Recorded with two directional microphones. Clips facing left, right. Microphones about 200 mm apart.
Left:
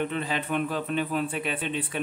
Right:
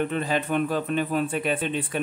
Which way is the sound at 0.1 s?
45° right (ahead or behind).